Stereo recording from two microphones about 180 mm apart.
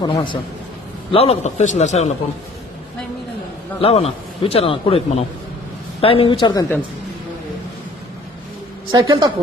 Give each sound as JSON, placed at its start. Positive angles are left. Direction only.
{"t": 0.0, "sound": "a man's voice", "side_deg": 25}
{"t": 3.8, "sound": "a man's voice", "side_deg": 35}
{"t": 8.9, "sound": "a woman's voice", "side_deg": -25}